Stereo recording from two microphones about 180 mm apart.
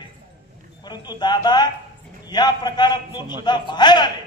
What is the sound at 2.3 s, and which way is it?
A man's voice, 25° left (ahead or behind).